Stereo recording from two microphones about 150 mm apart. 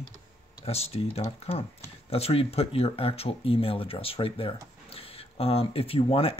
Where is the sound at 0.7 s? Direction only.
45° left (ahead or behind).